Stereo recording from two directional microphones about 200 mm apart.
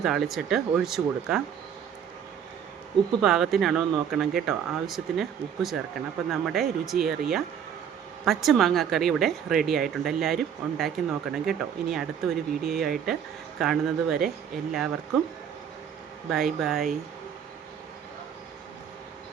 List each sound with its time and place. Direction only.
0.0 s a woman's voice: centre (ahead or behind)
3.2 s a woman's voice: centre (ahead or behind)
16.3 s a woman's voice: centre (ahead or behind)